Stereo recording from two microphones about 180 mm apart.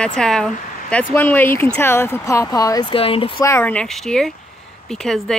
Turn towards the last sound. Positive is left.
turn(degrees=5)  # may be behind; listen again after turning